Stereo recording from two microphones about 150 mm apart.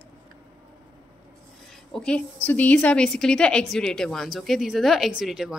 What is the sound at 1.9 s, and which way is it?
A woman's voice, 5° left (ahead or behind).